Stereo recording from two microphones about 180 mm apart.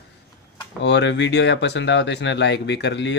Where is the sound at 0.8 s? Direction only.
75° left (ahead or behind).